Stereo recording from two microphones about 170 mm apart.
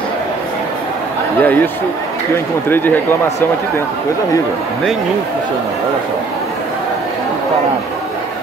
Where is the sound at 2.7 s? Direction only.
10° left (ahead or behind).